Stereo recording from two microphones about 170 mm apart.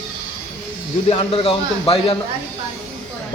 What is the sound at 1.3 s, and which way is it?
Speech, 30° left (ahead or behind).